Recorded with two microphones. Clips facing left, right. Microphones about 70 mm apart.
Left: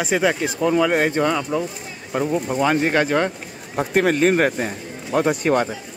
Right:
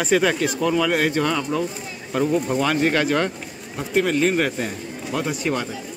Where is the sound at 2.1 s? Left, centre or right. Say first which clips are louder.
Right 1 dB; centre.